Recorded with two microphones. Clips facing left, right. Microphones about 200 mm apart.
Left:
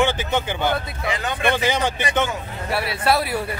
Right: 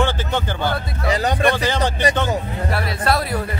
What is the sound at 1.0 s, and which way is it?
Speech, 40° right (ahead or behind).